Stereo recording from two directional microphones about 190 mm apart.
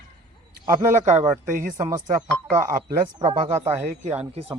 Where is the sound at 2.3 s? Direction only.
5° left (ahead or behind).